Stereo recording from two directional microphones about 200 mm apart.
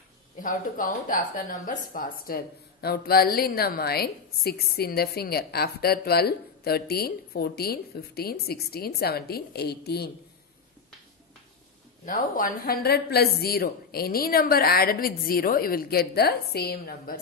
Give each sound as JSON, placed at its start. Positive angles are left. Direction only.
{"t": 0.4, "sound": "speech", "side_deg": 40}
{"t": 12.0, "sound": "speech", "side_deg": 40}
{"t": 12.6, "sound": "speech", "side_deg": 50}